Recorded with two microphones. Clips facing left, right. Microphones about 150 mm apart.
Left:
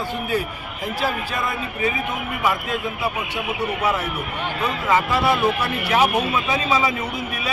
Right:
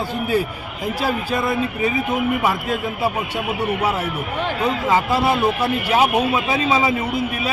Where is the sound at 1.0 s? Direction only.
35° right (ahead or behind).